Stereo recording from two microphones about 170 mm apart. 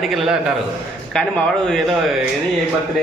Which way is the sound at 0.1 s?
Centre (ahead or behind).